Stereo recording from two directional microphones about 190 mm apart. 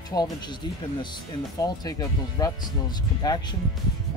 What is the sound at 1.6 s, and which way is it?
Speech, 20° left (ahead or behind).